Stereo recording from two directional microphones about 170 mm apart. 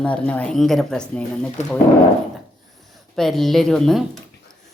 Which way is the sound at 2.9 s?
Centre (ahead or behind).